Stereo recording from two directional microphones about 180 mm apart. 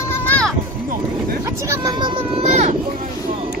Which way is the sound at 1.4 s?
20° right (ahead or behind).